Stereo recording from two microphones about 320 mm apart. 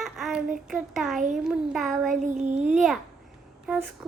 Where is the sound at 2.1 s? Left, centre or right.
Right.